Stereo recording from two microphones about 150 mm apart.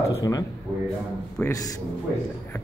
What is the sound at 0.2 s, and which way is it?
Speech, 25° left (ahead or behind).